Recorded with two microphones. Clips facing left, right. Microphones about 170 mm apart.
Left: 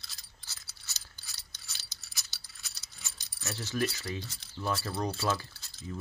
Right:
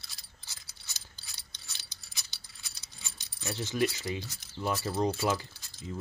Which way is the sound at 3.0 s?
15° right (ahead or behind).